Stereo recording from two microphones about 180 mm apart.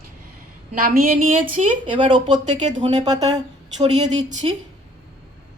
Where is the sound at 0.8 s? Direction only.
50° right (ahead or behind).